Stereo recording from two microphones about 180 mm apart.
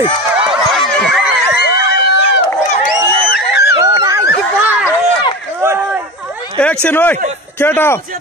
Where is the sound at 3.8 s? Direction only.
20° right (ahead or behind).